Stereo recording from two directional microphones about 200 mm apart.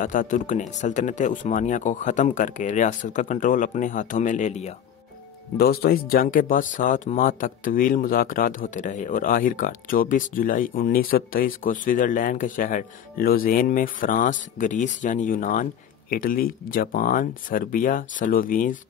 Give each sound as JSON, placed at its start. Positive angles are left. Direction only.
{"t": 0.0, "sound": "speech", "side_deg": 40}
{"t": 5.6, "sound": "speech", "side_deg": 50}